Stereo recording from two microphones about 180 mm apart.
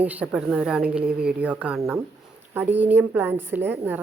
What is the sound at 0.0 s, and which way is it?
A woman's voice, 10° right (ahead or behind).